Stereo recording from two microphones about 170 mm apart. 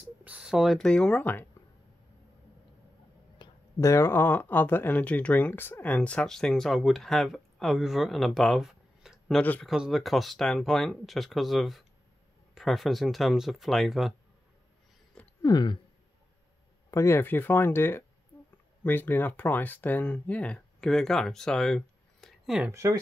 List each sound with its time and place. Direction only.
0.0 s speech: 5° right (ahead or behind); by 1.5 s 10° left (ahead or behind)
3.3 s speech: 20° left (ahead or behind); by 9.4 s centre (ahead or behind)
9.4 s speech: 10° left (ahead or behind)
9.7 s speech: centre (ahead or behind)
15.4 s speech: 25° left (ahead or behind)
16.9 s speech: 15° left (ahead or behind); by 22.7 s centre (ahead or behind)
22.7 s speech: 15° right (ahead or behind)